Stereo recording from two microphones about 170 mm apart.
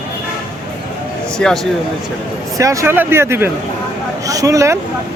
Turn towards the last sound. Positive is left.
turn(degrees=-20)  # may be behind; listen again after turning